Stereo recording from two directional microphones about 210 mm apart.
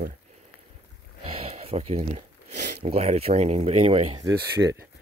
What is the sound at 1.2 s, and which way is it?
Speech, 25° right (ahead or behind).